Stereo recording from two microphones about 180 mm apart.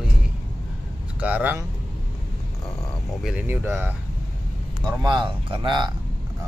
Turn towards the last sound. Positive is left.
turn(degrees=-25)  # may be behind; listen again after turning